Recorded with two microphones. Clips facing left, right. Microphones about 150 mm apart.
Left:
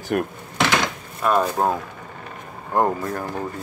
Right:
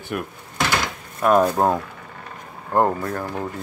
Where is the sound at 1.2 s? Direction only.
10° right (ahead or behind).